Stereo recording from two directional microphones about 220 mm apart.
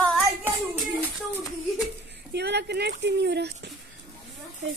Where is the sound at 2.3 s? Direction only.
50° right (ahead or behind).